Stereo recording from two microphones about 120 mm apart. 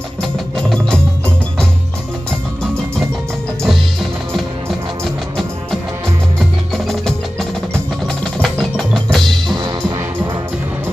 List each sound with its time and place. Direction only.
0.2 s music: 5° left (ahead or behind)
3.6 s music: centre (ahead or behind)
6.7 s wood block: centre (ahead or behind)
9.7 s music: 40° right (ahead or behind)